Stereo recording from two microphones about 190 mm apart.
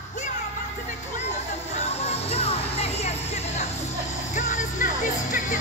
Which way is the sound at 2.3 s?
30° left (ahead or behind).